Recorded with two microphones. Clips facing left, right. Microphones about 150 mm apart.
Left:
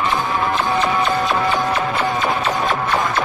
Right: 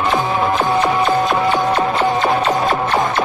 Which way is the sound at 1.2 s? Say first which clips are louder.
Right 3 dB; 20° right (ahead or behind).